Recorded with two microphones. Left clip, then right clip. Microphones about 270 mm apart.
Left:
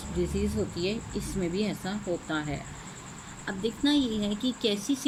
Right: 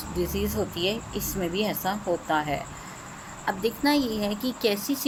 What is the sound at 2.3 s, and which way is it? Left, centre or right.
Speech, right.